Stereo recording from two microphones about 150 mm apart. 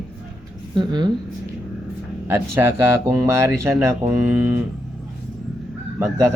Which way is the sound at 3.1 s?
20° right (ahead or behind).